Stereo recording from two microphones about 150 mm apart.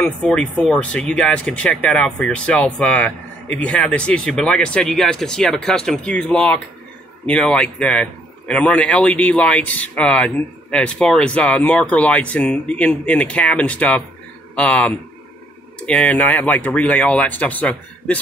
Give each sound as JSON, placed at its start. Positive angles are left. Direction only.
{"t": 0.0, "sound": "speech", "side_deg": 5}